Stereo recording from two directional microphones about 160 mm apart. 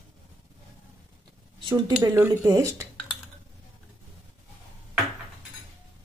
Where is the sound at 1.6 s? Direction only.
25° right (ahead or behind).